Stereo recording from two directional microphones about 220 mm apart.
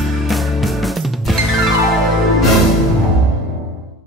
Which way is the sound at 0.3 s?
Centre (ahead or behind).